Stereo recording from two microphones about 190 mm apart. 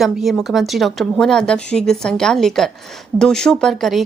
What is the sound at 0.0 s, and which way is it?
Speech, centre (ahead or behind).